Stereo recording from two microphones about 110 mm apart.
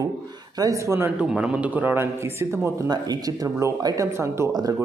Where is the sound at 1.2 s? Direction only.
10° right (ahead or behind).